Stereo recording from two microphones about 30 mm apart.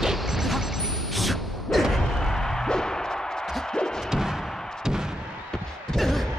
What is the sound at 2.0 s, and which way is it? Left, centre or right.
Music, centre.